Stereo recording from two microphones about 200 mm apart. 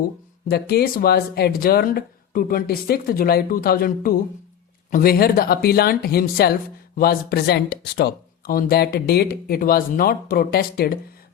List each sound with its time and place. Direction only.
0.5 s speech: 50° left (ahead or behind)